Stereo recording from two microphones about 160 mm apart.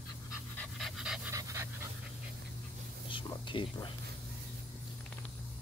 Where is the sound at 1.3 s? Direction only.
20° right (ahead or behind).